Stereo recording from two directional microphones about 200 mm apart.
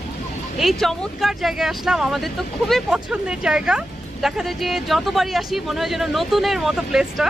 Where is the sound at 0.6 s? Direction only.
Centre (ahead or behind).